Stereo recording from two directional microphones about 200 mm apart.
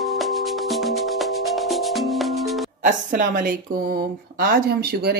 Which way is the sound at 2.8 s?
40° right (ahead or behind).